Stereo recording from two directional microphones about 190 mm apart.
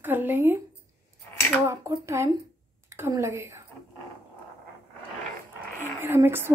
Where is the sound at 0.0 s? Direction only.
10° right (ahead or behind).